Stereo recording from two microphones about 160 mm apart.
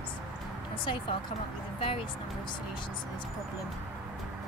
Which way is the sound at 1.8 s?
35° left (ahead or behind).